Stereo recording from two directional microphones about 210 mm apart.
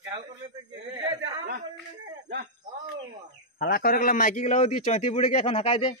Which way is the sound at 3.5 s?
45° left (ahead or behind).